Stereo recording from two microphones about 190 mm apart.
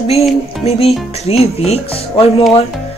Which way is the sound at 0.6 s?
35° left (ahead or behind).